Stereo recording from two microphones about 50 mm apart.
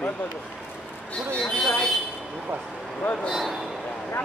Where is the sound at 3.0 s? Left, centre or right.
Left.